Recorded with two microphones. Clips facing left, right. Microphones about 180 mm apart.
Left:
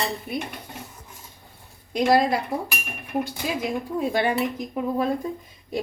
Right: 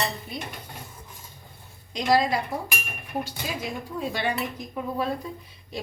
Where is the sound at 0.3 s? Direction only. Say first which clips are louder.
Left 7 dB; 60° left (ahead or behind).